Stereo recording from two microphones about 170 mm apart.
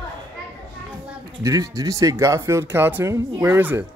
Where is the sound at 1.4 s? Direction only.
20° right (ahead or behind).